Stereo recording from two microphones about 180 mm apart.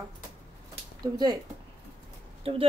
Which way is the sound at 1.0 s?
20° right (ahead or behind).